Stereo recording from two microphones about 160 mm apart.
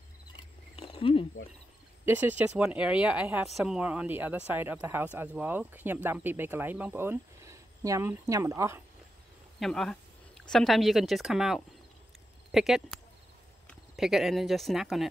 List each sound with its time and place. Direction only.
0.7 s cricket: 35° left (ahead or behind)
2.0 s speech: 10° right (ahead or behind)
9.6 s a sound: centre (ahead or behind)
10.5 s speech: centre (ahead or behind)